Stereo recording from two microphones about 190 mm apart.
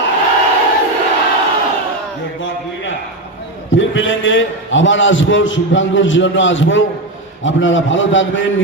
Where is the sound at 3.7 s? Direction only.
80° left.